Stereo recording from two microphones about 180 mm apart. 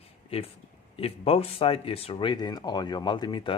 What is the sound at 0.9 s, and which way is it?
Speech, 35° left (ahead or behind).